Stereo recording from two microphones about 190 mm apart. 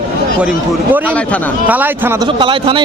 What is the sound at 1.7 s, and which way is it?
Speech, 10° right (ahead or behind).